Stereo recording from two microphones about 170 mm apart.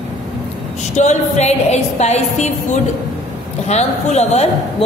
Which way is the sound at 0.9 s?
40° left (ahead or behind).